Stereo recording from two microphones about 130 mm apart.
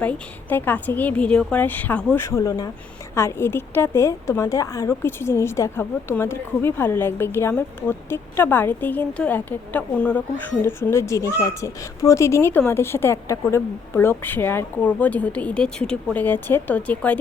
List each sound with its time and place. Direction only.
0.0 s speech: 10° left (ahead or behind)
2.2 s a woman's voice: 25° left (ahead or behind)